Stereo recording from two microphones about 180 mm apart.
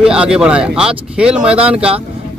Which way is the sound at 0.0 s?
5° right (ahead or behind).